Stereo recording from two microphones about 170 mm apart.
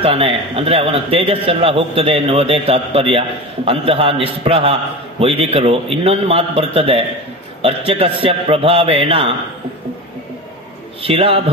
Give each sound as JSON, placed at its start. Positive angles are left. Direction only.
{"t": 0.0, "sound": "a man's voice", "side_deg": -35}
{"t": 11.0, "sound": "a man's voice", "side_deg": -35}